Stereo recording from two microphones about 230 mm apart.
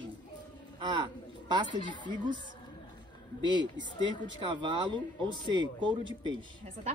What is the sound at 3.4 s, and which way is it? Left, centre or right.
Speech, centre.